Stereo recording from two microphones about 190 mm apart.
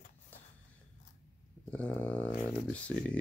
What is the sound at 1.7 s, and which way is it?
Speech, 10° left (ahead or behind).